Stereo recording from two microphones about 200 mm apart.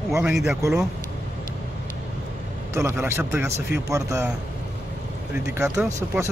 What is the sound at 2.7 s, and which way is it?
Speech, 15° right (ahead or behind).